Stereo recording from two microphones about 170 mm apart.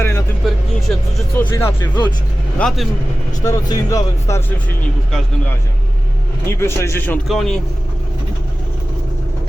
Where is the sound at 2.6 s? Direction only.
5° left (ahead or behind).